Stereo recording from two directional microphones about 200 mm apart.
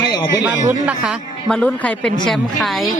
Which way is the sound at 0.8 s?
5° right (ahead or behind).